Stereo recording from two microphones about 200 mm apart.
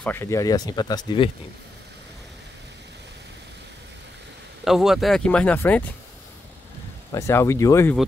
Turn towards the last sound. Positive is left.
turn(degrees=15)  # may be behind; listen again after turning